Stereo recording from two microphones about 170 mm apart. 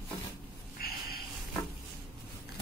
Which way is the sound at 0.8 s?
65° left (ahead or behind).